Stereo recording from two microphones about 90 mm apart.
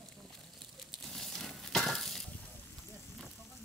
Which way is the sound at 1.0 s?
5° left (ahead or behind).